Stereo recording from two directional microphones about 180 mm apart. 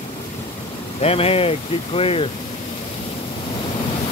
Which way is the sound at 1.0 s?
35° left (ahead or behind).